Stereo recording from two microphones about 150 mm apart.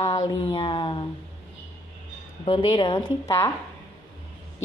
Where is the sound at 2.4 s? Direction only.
35° left (ahead or behind).